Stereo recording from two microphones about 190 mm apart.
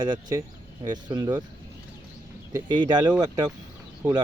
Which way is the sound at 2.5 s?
20° right (ahead or behind).